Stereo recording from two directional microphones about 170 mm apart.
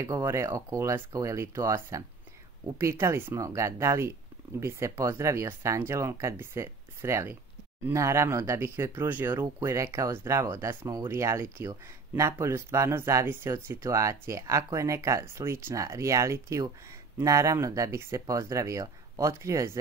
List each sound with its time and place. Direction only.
0.0 s speech: 20° right (ahead or behind)